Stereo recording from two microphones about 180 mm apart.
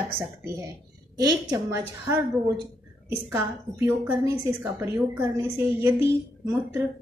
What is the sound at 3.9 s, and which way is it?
A woman's voice, 10° right (ahead or behind).